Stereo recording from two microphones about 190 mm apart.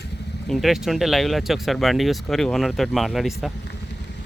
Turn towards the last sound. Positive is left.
turn(degrees=0)  # may be behind; listen again after turning